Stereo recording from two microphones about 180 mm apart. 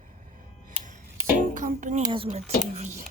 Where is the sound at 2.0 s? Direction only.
30° right (ahead or behind).